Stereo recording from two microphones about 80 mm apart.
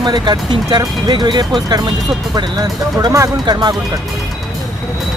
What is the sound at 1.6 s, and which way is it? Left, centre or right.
Speech, right.